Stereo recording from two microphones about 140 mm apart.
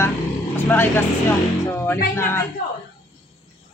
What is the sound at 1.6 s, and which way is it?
Music, 15° left (ahead or behind).